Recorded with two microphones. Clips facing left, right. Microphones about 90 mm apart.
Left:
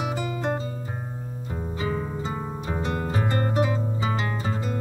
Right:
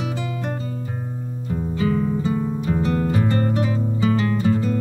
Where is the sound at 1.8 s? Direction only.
25° left (ahead or behind).